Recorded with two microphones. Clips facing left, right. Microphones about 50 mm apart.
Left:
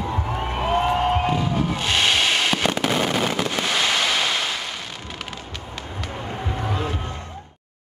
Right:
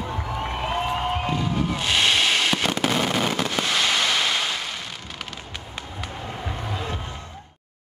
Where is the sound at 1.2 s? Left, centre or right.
Centre.